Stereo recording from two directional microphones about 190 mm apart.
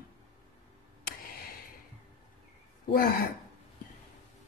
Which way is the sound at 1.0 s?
50° left (ahead or behind).